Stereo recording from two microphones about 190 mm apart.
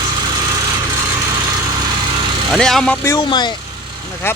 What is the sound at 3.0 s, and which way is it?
Speech, 20° left (ahead or behind).